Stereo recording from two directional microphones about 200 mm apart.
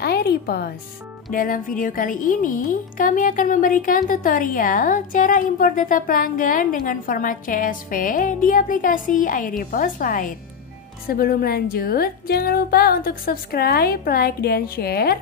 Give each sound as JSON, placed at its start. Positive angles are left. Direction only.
{"t": 0.0, "sound": "a woman's voice", "side_deg": 55}